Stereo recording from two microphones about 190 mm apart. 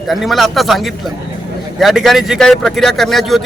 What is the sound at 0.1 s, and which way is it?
A man's voice, centre (ahead or behind).